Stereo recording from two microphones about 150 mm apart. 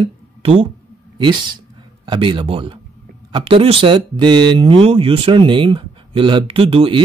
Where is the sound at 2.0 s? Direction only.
35° right (ahead or behind).